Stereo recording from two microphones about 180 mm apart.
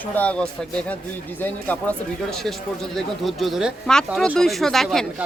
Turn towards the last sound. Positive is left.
turn(degrees=0)  # may be behind; listen again after turning